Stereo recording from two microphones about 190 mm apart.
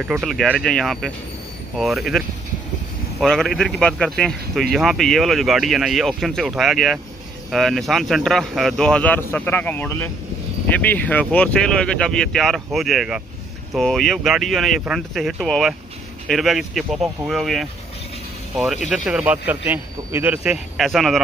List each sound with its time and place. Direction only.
0.0 s speech: 5° right (ahead or behind)
18.9 s speech: 5° right (ahead or behind)